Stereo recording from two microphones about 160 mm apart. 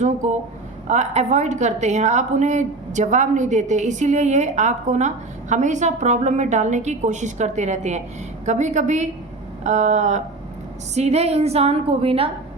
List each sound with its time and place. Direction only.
0.0 s a woman's voice: 50° right (ahead or behind)